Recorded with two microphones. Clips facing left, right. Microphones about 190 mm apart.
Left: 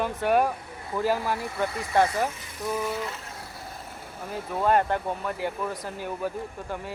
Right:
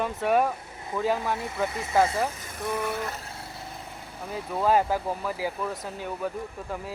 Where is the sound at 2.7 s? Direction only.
60° right (ahead or behind).